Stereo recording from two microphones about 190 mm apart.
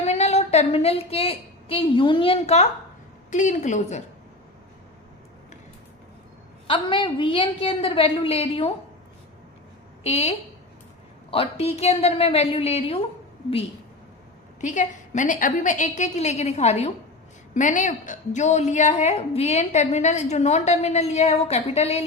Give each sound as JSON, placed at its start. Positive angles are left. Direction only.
{"t": 0.0, "sound": "a woman's voice", "side_deg": 35}
{"t": 6.7, "sound": "a woman's voice", "side_deg": 25}
{"t": 10.0, "sound": "a woman's voice", "side_deg": 35}
{"t": 14.6, "sound": "a woman's voice", "side_deg": 40}